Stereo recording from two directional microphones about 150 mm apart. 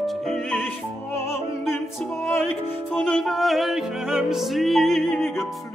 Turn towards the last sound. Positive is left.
turn(degrees=0)  # may be behind; listen again after turning